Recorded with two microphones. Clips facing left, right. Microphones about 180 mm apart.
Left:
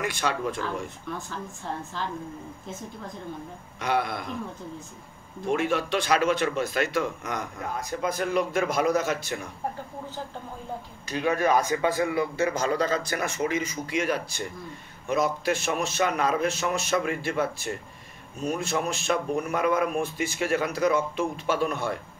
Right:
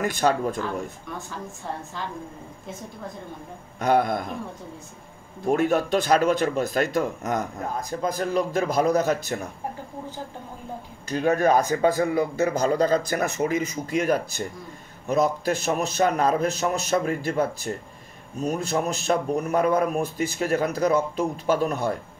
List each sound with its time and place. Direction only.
0.0 s speech: 40° right (ahead or behind)
3.8 s speech: 45° right (ahead or behind)
5.5 s speech: 40° right (ahead or behind)
11.1 s speech: 45° right (ahead or behind)